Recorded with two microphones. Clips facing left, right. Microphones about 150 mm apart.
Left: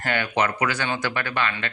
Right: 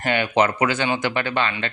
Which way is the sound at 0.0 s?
20° right (ahead or behind).